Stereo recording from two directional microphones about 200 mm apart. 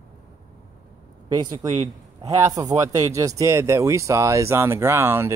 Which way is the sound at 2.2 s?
15° right (ahead or behind).